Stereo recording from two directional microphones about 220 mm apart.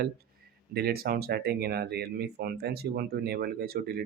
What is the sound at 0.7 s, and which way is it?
Speech, 45° right (ahead or behind).